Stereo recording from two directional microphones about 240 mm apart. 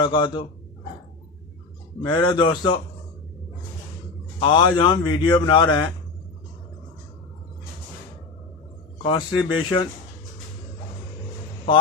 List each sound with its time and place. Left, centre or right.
0.0 s a man's voice: centre
2.0 s a man's voice: centre
4.4 s a man's voice: centre
9.0 s a man's voice: left